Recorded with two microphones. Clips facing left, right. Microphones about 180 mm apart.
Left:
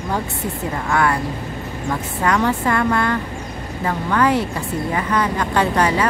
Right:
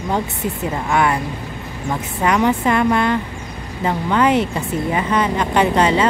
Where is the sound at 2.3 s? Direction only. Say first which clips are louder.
Right 2 dB; 20° right (ahead or behind).